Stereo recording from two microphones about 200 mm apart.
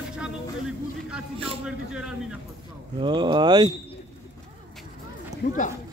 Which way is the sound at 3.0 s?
25° right (ahead or behind).